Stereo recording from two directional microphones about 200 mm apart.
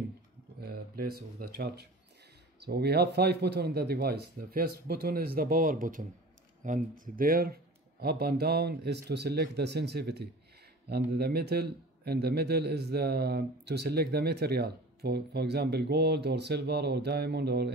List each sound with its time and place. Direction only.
0.6 s a man's voice: 50° right (ahead or behind)